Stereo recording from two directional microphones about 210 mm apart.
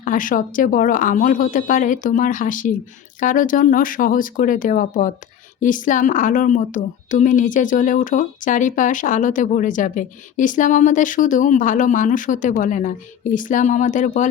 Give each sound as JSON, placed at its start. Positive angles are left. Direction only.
{"t": 0.0, "sound": "a woman's voice", "side_deg": 40}